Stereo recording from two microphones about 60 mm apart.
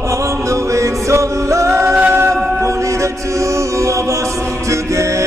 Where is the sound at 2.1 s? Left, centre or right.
Right.